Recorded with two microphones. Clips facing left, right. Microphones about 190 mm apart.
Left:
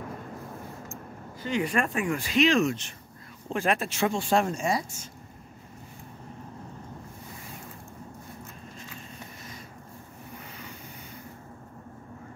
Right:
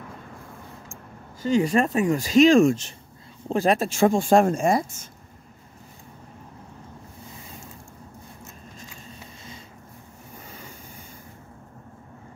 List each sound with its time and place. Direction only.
1.4 s speech: 40° right (ahead or behind)